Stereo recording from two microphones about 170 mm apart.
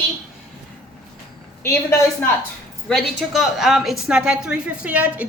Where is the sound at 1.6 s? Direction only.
15° left (ahead or behind).